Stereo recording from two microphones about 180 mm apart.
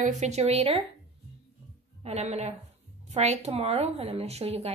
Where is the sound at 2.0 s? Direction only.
35° right (ahead or behind).